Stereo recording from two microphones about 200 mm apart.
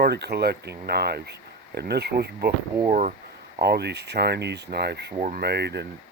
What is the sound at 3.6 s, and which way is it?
Speech, 55° right (ahead or behind).